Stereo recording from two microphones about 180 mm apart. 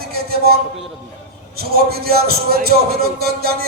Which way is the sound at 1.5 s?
60° right (ahead or behind).